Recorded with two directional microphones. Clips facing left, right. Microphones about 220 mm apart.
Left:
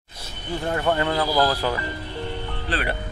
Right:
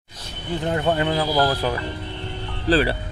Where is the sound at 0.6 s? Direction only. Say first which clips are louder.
Right 1 dB; 20° right (ahead or behind).